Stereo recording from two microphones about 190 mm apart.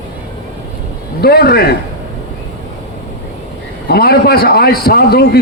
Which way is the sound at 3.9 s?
55° left (ahead or behind).